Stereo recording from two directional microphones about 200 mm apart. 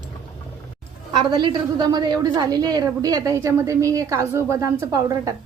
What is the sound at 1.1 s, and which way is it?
A woman's voice, 20° right (ahead or behind).